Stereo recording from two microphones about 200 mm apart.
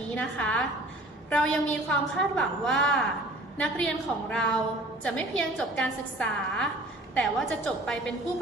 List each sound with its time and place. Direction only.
0.1 s a woman's voice: 5° left (ahead or behind)